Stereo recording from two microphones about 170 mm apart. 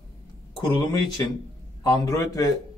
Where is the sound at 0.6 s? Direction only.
25° left (ahead or behind).